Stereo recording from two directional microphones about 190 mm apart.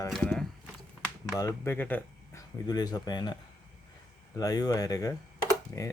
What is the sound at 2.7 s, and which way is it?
Speech, 20° left (ahead or behind).